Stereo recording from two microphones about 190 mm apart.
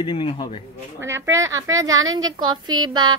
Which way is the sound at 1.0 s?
15° right (ahead or behind).